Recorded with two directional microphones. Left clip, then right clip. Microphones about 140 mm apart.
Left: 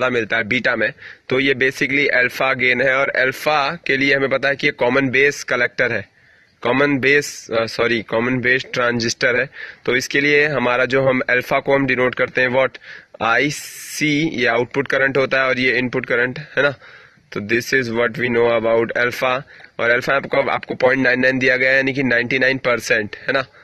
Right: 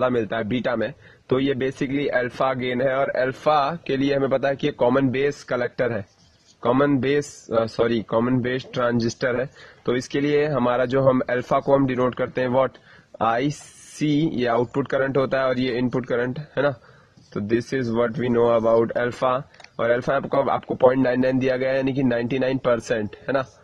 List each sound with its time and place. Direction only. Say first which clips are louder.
0.0 s speech: left 4 dB; 15° left (ahead or behind)